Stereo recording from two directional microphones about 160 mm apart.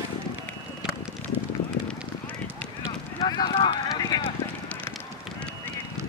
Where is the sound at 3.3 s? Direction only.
25° left (ahead or behind).